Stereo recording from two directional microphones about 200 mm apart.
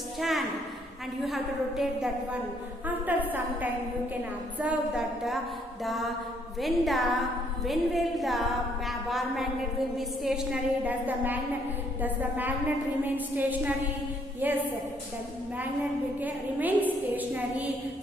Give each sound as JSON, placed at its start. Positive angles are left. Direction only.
{"t": 0.2, "sound": "a sound", "side_deg": 0}
{"t": 1.2, "sound": "a woman's voice", "side_deg": 0}
{"t": 16.2, "sound": "a woman's voice", "side_deg": -10}